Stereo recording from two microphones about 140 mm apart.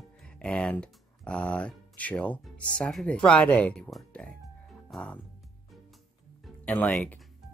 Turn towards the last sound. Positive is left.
turn(degrees=10)  # may be behind; listen again after turning